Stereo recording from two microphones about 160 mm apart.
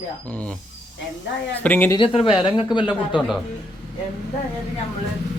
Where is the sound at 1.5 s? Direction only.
10° left (ahead or behind).